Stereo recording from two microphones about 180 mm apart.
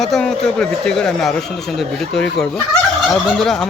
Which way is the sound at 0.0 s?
Centre (ahead or behind).